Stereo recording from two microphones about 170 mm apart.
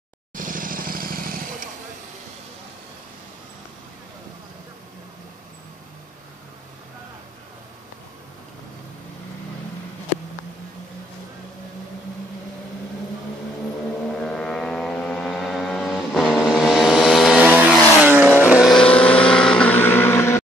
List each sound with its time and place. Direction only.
0.3 s vehicle: 50° right (ahead or behind)
14.0 s vehicle: 5° left (ahead or behind)
18.5 s vehicle: centre (ahead or behind)